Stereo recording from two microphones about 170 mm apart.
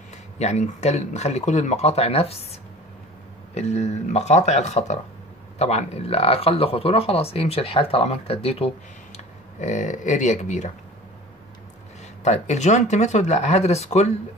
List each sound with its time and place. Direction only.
0.4 s speech: 40° left (ahead or behind)
12.2 s speech: 45° left (ahead or behind)